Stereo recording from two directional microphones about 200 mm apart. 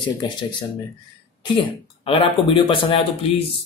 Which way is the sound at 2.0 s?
25° left (ahead or behind).